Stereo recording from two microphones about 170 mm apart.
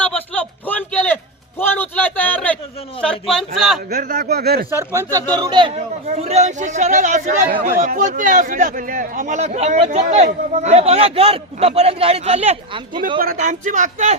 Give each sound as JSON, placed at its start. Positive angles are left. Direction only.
{"t": 0.7, "sound": "a sound", "side_deg": 10}
{"t": 3.0, "sound": "a man's voice", "side_deg": 5}
{"t": 3.8, "sound": "speech", "side_deg": -65}
{"t": 5.3, "sound": "speech", "side_deg": -25}
{"t": 5.7, "sound": "a man's voice", "side_deg": -40}
{"t": 13.1, "sound": "a man's voice", "side_deg": -55}